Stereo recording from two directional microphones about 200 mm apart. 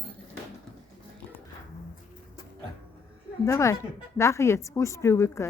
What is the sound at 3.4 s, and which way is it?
A woman's voice, 15° left (ahead or behind).